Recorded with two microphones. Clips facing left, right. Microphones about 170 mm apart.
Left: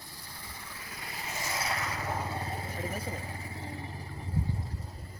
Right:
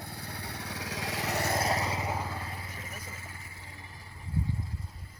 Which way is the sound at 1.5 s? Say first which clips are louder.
Right 2 dB; 40° right (ahead or behind).